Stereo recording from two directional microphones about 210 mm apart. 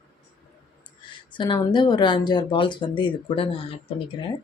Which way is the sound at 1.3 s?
20° left (ahead or behind).